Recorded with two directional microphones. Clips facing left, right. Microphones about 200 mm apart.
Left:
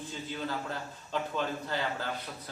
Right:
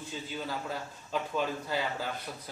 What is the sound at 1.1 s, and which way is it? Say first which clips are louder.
Speech: right 1 dB; 10° right (ahead or behind).